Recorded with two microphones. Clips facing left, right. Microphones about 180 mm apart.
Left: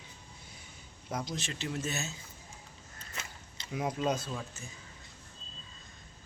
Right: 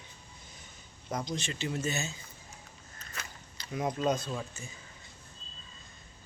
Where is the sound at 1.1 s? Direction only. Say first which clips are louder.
Right 2 dB; 5° left (ahead or behind).